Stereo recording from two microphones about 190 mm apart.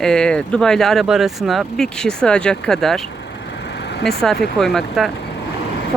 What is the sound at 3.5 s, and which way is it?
Vehicle, 65° left (ahead or behind).